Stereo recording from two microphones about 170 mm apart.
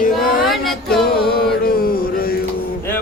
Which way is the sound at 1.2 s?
65° left (ahead or behind).